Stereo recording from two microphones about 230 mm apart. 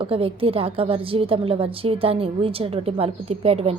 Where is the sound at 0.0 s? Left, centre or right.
Right.